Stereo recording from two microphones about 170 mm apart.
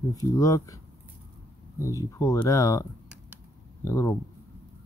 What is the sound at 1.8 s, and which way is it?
Speech, 20° left (ahead or behind).